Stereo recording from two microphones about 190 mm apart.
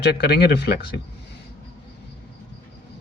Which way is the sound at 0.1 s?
60° left (ahead or behind).